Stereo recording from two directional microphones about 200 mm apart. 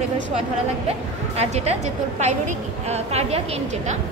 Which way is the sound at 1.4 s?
35° right (ahead or behind).